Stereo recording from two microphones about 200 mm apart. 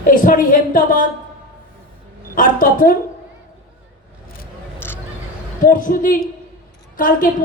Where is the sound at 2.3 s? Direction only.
45° left (ahead or behind).